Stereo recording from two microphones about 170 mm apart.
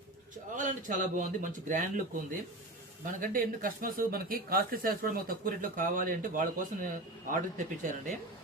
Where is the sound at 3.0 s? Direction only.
55° right (ahead or behind).